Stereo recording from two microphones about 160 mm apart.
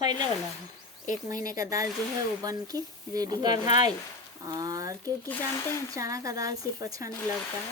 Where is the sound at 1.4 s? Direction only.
20° right (ahead or behind).